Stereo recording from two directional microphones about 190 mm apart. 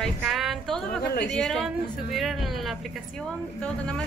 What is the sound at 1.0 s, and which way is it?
Speech, 60° left (ahead or behind).